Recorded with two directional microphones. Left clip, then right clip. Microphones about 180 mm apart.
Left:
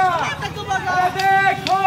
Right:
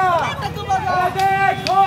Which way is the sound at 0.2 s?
55° right (ahead or behind).